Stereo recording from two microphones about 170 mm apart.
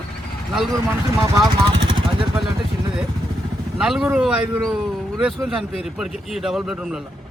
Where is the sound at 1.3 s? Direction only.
30° right (ahead or behind).